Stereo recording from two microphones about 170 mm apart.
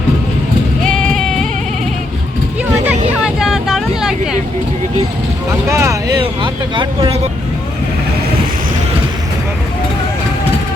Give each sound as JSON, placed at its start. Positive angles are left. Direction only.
{"t": 0.9, "sound": "bleat", "side_deg": 5}
{"t": 2.8, "sound": "vehicle", "side_deg": -5}
{"t": 5.6, "sound": "a sound", "side_deg": -15}